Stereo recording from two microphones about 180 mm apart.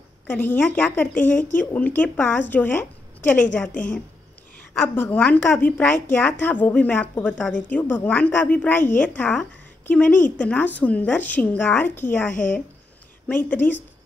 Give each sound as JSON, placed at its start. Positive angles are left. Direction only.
{"t": 0.3, "sound": "a woman's voice", "side_deg": 10}
{"t": 1.1, "sound": "a woman's voice", "side_deg": 45}
{"t": 1.5, "sound": "a woman's voice", "side_deg": 10}
{"t": 3.7, "sound": "a woman's voice", "side_deg": 50}
{"t": 4.8, "sound": "a woman's voice", "side_deg": 10}